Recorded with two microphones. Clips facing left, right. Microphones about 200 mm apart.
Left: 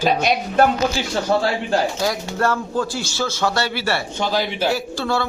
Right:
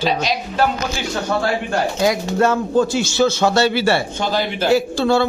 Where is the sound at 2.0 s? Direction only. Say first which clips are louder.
Right 5 dB; 20° right (ahead or behind).